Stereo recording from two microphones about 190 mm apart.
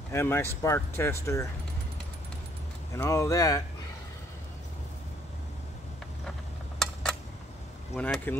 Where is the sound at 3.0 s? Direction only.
15° left (ahead or behind).